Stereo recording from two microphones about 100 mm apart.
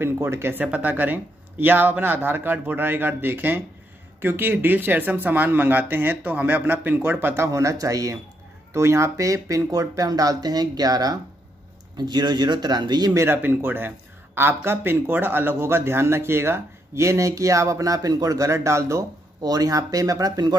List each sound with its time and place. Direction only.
0.0 s speech: 25° right (ahead or behind); by 13.1 s 45° right (ahead or behind)
13.1 s speech: 25° right (ahead or behind)